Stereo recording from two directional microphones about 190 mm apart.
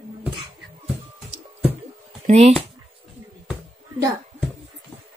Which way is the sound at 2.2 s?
35° right (ahead or behind).